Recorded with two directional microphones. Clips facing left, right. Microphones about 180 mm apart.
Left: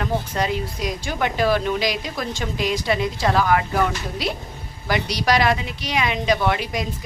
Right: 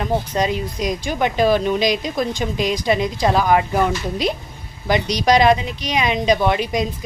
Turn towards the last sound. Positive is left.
turn(degrees=-20)  # may be behind; listen again after turning